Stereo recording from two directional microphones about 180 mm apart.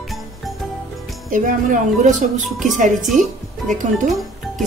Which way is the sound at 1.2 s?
45° right (ahead or behind).